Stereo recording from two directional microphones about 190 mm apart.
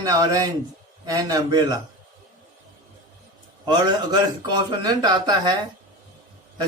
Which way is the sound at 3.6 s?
20° right (ahead or behind).